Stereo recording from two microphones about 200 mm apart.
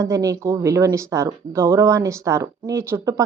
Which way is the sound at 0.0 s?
15° right (ahead or behind).